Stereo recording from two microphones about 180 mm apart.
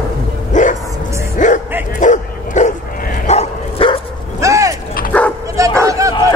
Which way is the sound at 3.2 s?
30° left (ahead or behind).